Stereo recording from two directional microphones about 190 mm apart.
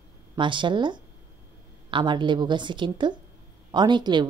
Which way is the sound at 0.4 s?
25° right (ahead or behind).